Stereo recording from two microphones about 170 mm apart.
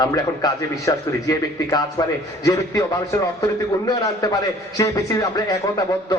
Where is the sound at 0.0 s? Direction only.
20° left (ahead or behind).